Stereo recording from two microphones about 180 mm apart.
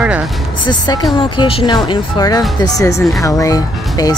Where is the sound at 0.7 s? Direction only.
25° left (ahead or behind).